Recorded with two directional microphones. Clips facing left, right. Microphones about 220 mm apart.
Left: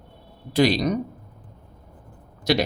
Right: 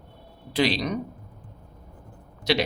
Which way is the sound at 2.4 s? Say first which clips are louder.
Left 2 dB; 45° left (ahead or behind).